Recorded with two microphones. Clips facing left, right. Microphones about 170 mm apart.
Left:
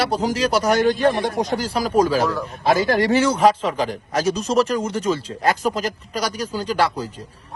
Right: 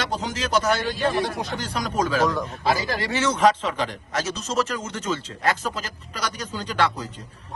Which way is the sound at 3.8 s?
35° left (ahead or behind).